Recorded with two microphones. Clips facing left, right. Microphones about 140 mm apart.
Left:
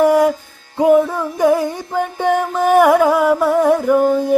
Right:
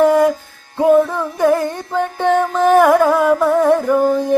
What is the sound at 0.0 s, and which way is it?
Music, 10° left (ahead or behind).